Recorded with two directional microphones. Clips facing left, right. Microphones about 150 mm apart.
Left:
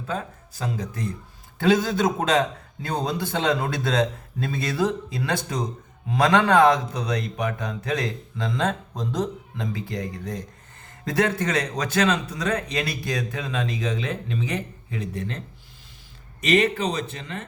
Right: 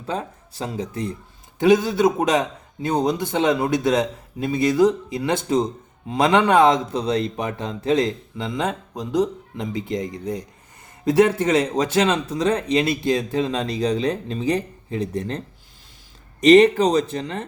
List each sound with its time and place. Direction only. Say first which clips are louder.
0.1 s speech: right 3 dB; 30° right (ahead or behind)
1.5 s a man's voice: right 4 dB; 15° right (ahead or behind); by 15.4 s 40° right (ahead or behind)
16.4 s speech: right 9 dB; 35° right (ahead or behind)